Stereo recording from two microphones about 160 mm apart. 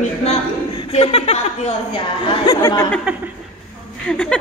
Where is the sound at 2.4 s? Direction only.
20° left (ahead or behind).